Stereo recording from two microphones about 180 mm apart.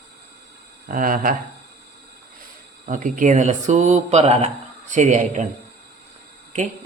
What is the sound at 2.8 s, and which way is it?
A man's voice, 45° right (ahead or behind).